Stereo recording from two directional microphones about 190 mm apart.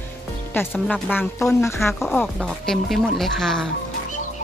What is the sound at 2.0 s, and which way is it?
Speech, centre (ahead or behind).